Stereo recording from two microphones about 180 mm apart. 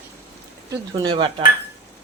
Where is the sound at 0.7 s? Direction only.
25° right (ahead or behind).